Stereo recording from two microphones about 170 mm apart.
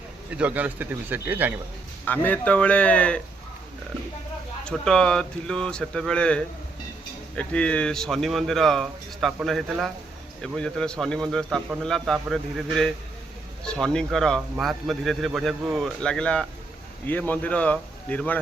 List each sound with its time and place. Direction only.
0.3 s a man's voice: 10° right (ahead or behind)
2.0 s speech: 10° left (ahead or behind)
4.6 s speech: 5° left (ahead or behind)